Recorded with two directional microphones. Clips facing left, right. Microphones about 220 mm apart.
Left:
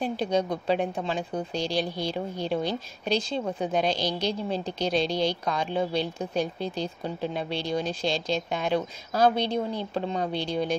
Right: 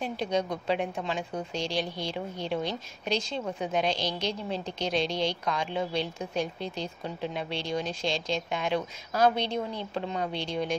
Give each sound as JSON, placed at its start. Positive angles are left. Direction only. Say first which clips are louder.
{"t": 0.0, "sound": "a woman's voice", "louder": "left 3 dB", "side_deg": 35}